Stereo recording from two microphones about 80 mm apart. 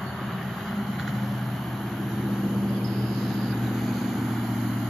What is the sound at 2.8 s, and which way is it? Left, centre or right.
Vehicle, centre.